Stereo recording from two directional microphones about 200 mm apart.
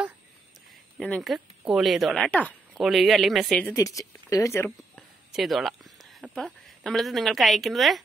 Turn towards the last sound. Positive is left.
turn(degrees=0)  # may be behind; listen again after turning